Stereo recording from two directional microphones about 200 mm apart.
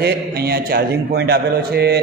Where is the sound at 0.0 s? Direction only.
50° right (ahead or behind).